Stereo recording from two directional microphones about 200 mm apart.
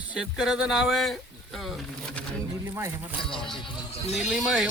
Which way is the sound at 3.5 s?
25° left (ahead or behind).